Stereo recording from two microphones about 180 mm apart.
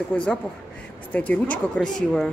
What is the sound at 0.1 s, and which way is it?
Speech, 5° left (ahead or behind).